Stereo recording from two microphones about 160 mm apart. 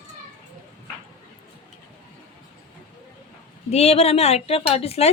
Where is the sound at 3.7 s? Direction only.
40° left (ahead or behind).